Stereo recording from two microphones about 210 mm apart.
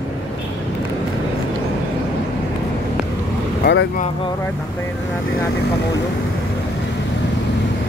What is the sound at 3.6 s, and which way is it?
Speech, 50° left (ahead or behind).